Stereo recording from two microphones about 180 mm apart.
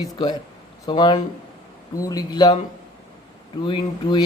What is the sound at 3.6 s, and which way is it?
Speech, 25° left (ahead or behind).